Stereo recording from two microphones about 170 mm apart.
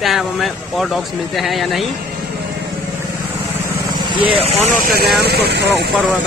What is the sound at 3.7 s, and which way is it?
Speech, 25° right (ahead or behind).